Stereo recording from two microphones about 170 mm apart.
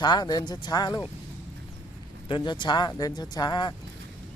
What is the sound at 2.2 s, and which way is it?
Speech, 25° left (ahead or behind).